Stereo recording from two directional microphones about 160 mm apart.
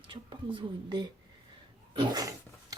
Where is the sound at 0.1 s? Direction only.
30° right (ahead or behind).